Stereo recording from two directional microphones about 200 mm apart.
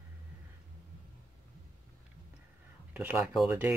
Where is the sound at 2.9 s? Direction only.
10° right (ahead or behind).